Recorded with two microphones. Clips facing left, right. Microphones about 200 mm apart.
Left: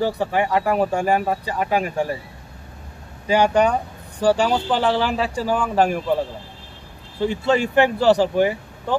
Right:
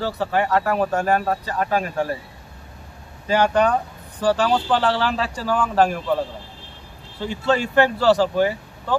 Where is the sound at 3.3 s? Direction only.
10° left (ahead or behind).